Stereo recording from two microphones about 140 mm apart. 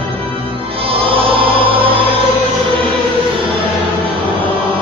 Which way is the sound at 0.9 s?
40° right (ahead or behind).